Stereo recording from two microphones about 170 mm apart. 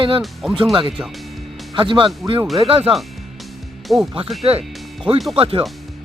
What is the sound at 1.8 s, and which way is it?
Speech, 30° right (ahead or behind).